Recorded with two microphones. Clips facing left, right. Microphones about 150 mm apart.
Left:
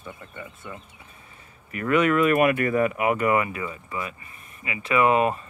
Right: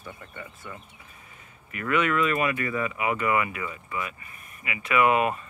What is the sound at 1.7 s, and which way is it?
Speech, 40° left (ahead or behind).